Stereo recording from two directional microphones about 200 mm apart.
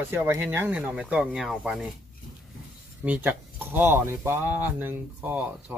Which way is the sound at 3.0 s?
10° right (ahead or behind).